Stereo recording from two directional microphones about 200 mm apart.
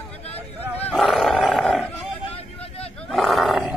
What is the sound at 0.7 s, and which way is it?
Roaring cats, 5° left (ahead or behind).